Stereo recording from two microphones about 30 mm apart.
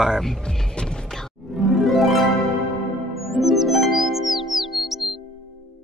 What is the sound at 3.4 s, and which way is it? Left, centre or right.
Music, centre.